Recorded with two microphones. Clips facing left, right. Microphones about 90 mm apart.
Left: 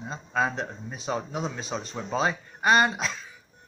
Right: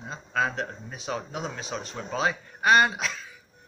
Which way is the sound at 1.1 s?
30° left (ahead or behind).